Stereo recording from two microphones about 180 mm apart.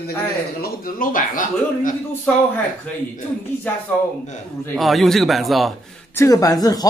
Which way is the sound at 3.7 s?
10° left (ahead or behind).